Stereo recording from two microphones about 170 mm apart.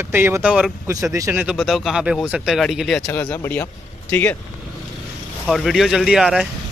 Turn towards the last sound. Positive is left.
turn(degrees=0)  # may be behind; listen again after turning